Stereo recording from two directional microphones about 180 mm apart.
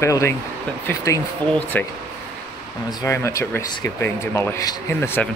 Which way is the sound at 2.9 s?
15° left (ahead or behind).